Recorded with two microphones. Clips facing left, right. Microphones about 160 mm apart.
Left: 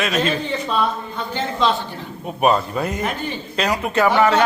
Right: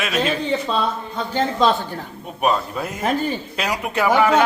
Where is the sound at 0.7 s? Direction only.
40° right (ahead or behind).